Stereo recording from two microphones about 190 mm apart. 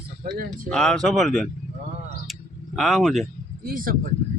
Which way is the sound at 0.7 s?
5° left (ahead or behind).